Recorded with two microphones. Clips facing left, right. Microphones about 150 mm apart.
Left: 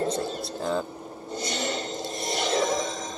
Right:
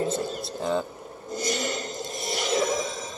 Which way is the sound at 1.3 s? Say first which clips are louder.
Right 2 dB; 30° left (ahead or behind).